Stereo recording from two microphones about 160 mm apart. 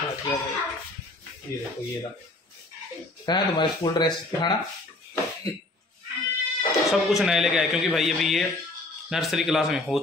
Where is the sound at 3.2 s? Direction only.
30° left (ahead or behind).